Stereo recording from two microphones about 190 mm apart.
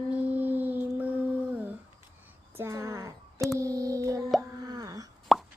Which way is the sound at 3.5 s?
15° right (ahead or behind).